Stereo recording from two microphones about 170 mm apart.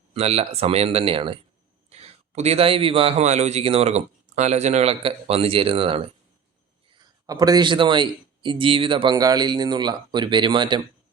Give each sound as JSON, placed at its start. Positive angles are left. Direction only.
{"t": 0.1, "sound": "a man's voice", "side_deg": -35}